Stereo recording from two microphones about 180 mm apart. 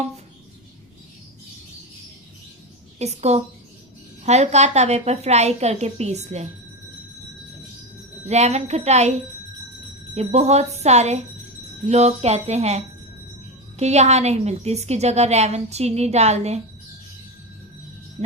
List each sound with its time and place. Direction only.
3.0 s a woman's voice: 35° right (ahead or behind)
8.3 s a woman's voice: 35° right (ahead or behind)